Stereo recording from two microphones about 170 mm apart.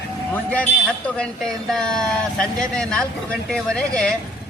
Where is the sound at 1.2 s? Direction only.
5° left (ahead or behind).